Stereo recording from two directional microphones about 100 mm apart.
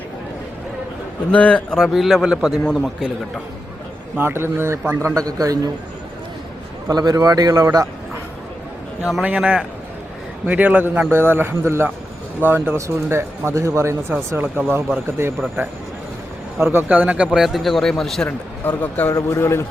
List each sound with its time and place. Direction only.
1.3 s a man's voice: 10° left (ahead or behind); by 3.4 s 5° right (ahead or behind)
4.2 s a man's voice: 20° right (ahead or behind)
6.9 s a man's voice: 40° right (ahead or behind)
9.0 s a man's voice: 10° right (ahead or behind); by 15.7 s 25° right (ahead or behind)
16.7 s a man's voice: 15° right (ahead or behind)
17.3 s a man's voice: centre (ahead or behind)
18.8 s speech: 15° left (ahead or behind)
19.1 s a man's voice: 30° left (ahead or behind)